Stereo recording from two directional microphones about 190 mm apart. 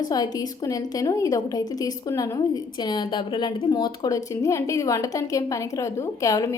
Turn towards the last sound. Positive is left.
turn(degrees=15)  # may be behind; listen again after turning